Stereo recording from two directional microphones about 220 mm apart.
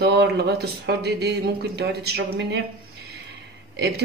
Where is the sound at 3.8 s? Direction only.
45° right (ahead or behind).